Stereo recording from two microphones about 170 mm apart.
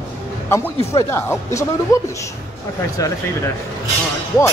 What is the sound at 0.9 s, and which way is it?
Speech, 15° left (ahead or behind).